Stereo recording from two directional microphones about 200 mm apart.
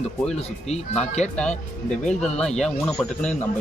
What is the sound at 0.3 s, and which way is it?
Speech, 35° left (ahead or behind).